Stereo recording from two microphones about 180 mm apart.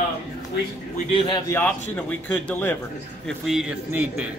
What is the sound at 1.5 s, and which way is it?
A man's voice, 10° left (ahead or behind).